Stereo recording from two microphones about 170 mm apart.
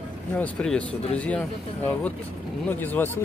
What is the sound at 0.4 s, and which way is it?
Speech, 5° left (ahead or behind).